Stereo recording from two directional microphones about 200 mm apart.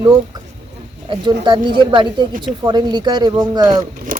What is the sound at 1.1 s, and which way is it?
Speech, 25° right (ahead or behind).